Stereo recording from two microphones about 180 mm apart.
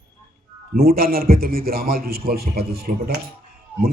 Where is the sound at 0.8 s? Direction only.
55° right (ahead or behind).